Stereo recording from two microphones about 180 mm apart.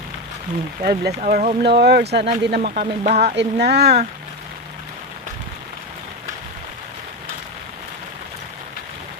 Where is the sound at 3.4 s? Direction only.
65° right (ahead or behind).